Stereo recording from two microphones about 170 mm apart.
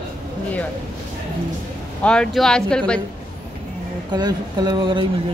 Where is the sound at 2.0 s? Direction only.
5° left (ahead or behind).